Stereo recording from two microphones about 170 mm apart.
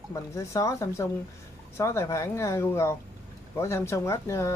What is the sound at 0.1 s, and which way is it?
Speech, 20° left (ahead or behind).